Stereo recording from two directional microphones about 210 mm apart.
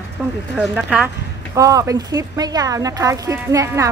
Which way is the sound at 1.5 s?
15° right (ahead or behind).